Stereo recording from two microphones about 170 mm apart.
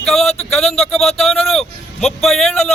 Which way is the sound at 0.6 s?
35° left (ahead or behind).